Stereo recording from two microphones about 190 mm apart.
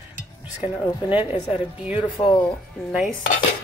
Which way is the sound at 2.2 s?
25° left (ahead or behind).